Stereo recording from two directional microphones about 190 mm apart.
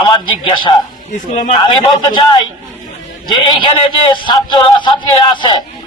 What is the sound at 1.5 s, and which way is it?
A man's voice, 25° left (ahead or behind).